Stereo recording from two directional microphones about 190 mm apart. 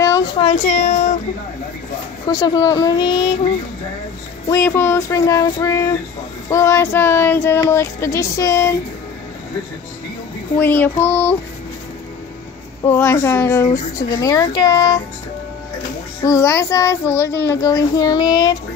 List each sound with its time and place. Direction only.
0.0 s a sound: 20° left (ahead or behind)
0.5 s speech: 40° left (ahead or behind)
2.2 s speech: 20° left (ahead or behind)
4.5 s child singing: 10° left (ahead or behind)
10.5 s child singing: 10° left (ahead or behind)
12.8 s child singing: 10° left (ahead or behind)
16.2 s child singing: 15° left (ahead or behind)
17.5 s speech: 15° left (ahead or behind)